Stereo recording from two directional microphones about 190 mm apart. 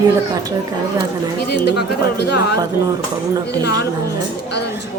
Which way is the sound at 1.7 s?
65° left (ahead or behind).